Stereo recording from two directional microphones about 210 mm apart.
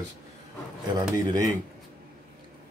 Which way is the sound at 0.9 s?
15° right (ahead or behind).